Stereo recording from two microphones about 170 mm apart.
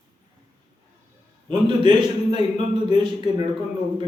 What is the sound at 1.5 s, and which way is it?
A man's voice, 25° right (ahead or behind).